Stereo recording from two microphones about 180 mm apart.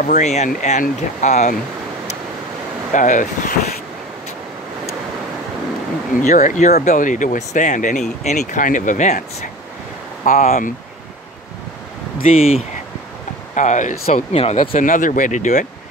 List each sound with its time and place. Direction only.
0.0 s speech: 40° left (ahead or behind)
2.9 s speech: 45° left (ahead or behind)
6.2 s speech: 45° left (ahead or behind)
10.2 s speech: 40° left (ahead or behind)
12.3 s speech: 35° left (ahead or behind)
14.7 s speech: 45° left (ahead or behind)